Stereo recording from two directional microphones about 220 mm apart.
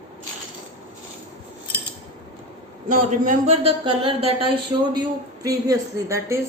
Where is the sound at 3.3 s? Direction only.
30° right (ahead or behind); by 6.4 s 15° right (ahead or behind).